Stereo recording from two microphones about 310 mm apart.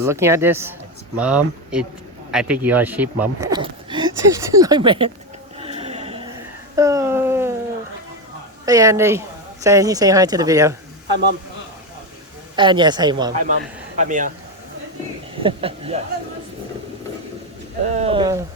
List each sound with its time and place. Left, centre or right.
0.0 s speech: centre
5.5 s a sound: centre
8.6 s speech: centre
12.5 s speech: centre
13.4 s speech: right
15.4 s speech: centre
17.8 s speech: right